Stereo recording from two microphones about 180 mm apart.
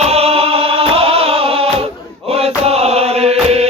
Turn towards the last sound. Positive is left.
turn(degrees=-35)  # may be behind; listen again after turning